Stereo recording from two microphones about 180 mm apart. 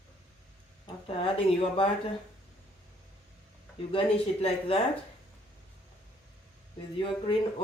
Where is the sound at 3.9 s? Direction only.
30° left (ahead or behind).